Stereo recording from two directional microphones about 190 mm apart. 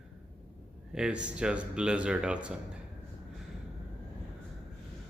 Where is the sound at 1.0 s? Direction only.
5° right (ahead or behind).